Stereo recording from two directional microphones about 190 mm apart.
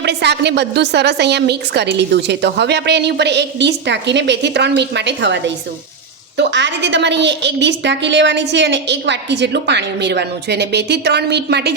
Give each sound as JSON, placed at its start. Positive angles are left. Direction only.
{"t": 0.0, "sound": "a woman's voice", "side_deg": -65}